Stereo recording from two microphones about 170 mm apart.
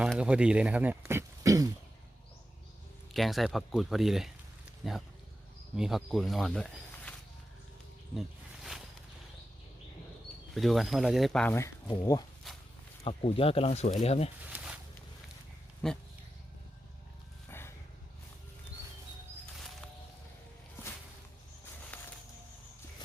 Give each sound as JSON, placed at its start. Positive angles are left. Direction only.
{"t": 0.0, "sound": "speech", "side_deg": -5}
{"t": 3.1, "sound": "speech", "side_deg": 0}
{"t": 8.1, "sound": "snake", "side_deg": 0}
{"t": 10.5, "sound": "speech", "side_deg": 0}
{"t": 11.5, "sound": "speech", "side_deg": 20}
{"t": 12.5, "sound": "walk", "side_deg": 0}
{"t": 13.1, "sound": "speech", "side_deg": 35}
{"t": 14.5, "sound": "a sound", "side_deg": -5}
{"t": 15.8, "sound": "speech", "side_deg": 5}